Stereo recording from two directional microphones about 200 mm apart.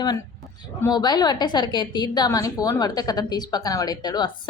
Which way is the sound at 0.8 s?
20° left (ahead or behind).